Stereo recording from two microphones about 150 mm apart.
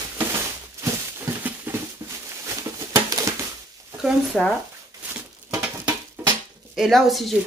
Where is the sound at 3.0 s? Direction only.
25° right (ahead or behind).